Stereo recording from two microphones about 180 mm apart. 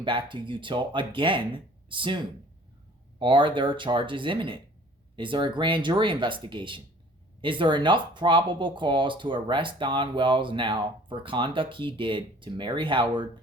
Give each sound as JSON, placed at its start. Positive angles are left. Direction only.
{"t": 0.0, "sound": "speech", "side_deg": -25}